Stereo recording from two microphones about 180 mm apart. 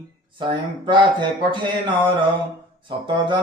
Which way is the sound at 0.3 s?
25° right (ahead or behind).